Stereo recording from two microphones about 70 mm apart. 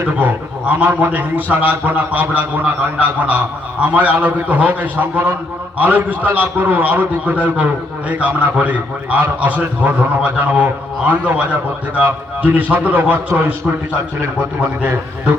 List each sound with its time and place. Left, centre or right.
0.0 s a man's voice: right